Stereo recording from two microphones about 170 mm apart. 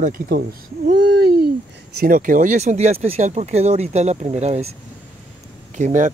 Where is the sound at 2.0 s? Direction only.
55° right (ahead or behind).